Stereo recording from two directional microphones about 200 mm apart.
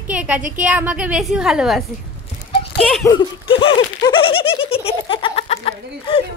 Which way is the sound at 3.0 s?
20° left (ahead or behind).